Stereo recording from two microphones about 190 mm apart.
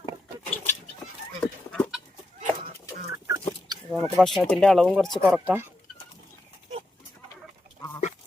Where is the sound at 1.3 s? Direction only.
10° left (ahead or behind).